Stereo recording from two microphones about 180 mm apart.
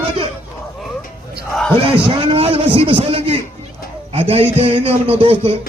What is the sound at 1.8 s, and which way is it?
A man's voice, 30° right (ahead or behind).